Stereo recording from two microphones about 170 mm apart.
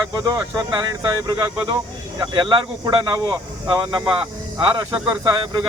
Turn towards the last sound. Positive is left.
turn(degrees=-25)  # may be behind; listen again after turning